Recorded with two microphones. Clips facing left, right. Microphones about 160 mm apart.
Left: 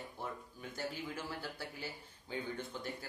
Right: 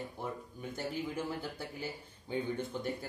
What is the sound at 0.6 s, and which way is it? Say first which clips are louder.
Speech: right 4 dB; 20° right (ahead or behind).